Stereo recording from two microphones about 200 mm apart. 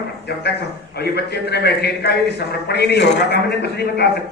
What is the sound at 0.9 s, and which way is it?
A man's voice, 55° left (ahead or behind).